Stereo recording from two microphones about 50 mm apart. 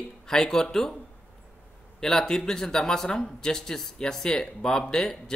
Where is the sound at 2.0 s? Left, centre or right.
Centre.